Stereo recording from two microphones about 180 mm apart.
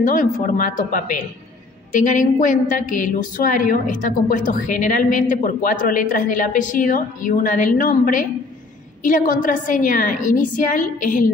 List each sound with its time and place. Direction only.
0.0 s a woman's voice: 45° left (ahead or behind)